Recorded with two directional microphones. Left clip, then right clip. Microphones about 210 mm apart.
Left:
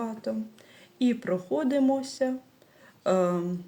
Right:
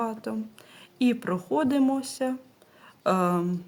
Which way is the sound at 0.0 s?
30° right (ahead or behind).